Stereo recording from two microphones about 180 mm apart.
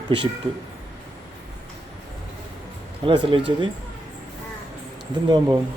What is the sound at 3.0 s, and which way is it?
Speech, 30° right (ahead or behind).